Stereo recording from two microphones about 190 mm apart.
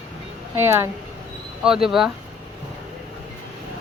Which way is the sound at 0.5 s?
10° right (ahead or behind).